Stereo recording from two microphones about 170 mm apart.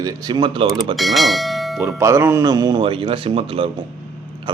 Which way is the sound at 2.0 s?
15° right (ahead or behind).